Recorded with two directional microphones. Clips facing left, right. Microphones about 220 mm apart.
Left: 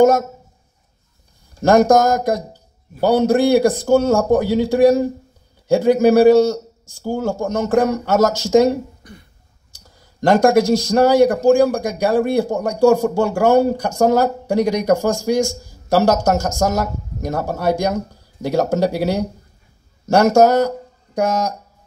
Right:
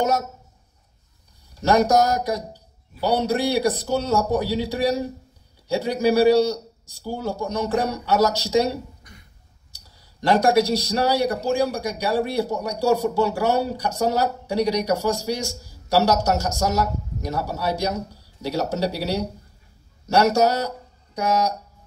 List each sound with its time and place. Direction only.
0.0 s speech: 50° left (ahead or behind)
1.5 s speech: 50° left (ahead or behind)